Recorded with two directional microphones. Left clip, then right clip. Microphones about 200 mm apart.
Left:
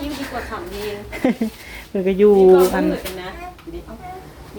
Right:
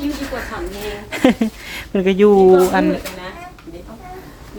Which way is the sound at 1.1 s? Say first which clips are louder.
Right 7 dB; 25° right (ahead or behind).